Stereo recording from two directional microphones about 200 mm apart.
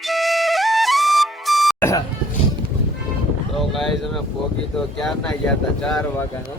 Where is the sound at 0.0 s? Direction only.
Centre (ahead or behind).